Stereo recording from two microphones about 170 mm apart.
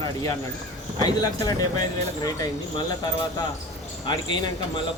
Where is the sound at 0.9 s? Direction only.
20° left (ahead or behind).